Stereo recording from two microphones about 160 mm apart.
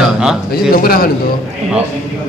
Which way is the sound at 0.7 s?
65° left (ahead or behind).